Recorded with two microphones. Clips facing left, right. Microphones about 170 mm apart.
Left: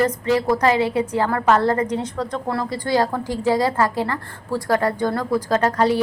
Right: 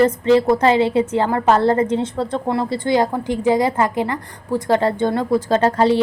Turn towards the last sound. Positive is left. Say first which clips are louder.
# right 3 dB
turn(degrees=-25)  # may be behind; listen again after turning